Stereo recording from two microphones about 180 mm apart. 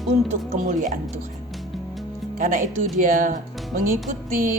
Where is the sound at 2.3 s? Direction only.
50° right (ahead or behind).